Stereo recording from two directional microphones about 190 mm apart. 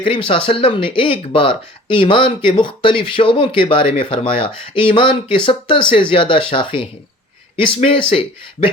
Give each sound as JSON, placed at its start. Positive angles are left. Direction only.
{"t": 0.0, "sound": "speech", "side_deg": 25}